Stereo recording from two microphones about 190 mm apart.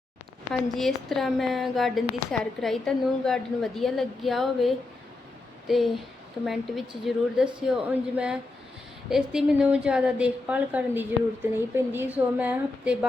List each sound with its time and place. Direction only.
0.7 s a woman's voice: centre (ahead or behind)